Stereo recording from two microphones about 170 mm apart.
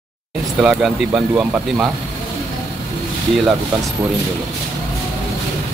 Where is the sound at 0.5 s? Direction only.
5° right (ahead or behind).